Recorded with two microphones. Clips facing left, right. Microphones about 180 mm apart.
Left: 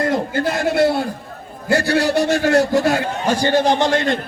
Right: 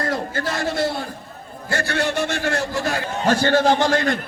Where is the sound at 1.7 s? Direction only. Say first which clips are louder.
Left 6 dB; 35° left (ahead or behind).